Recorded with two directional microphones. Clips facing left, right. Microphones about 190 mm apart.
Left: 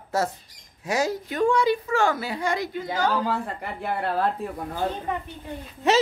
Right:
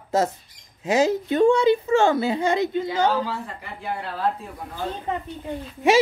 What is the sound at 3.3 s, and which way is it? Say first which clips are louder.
Speech: left 4 dB; 55° left (ahead or behind).